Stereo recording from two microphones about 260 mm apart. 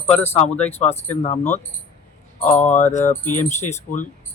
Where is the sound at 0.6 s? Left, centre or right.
Left.